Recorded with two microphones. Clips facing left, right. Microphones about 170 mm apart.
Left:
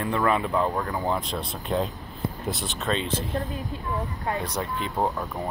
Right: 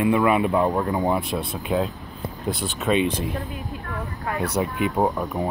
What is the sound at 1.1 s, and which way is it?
Speech, 10° right (ahead or behind).